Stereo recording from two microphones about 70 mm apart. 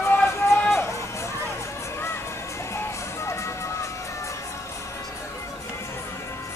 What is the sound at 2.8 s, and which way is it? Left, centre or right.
Music, left.